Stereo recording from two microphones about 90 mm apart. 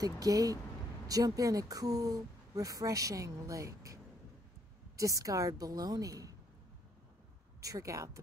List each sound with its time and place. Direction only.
0.0 s speech: 40° right (ahead or behind)
7.6 s speech: 40° right (ahead or behind)